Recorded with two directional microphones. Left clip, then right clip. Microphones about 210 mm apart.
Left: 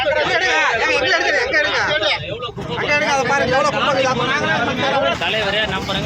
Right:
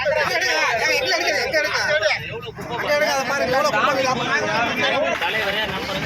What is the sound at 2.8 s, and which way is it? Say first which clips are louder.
Speech: left 3 dB; 10° right (ahead or behind).